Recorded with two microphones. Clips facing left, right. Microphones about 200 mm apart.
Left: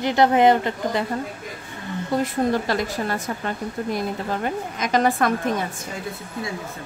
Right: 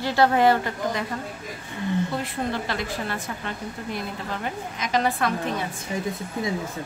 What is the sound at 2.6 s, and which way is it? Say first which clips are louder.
A woman's voice: left 5 dB; 40° left (ahead or behind).